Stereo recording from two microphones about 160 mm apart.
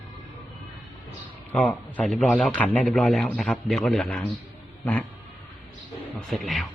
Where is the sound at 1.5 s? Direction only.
5° left (ahead or behind).